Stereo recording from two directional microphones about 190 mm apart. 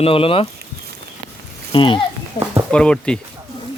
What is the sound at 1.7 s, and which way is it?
Speech, 25° left (ahead or behind).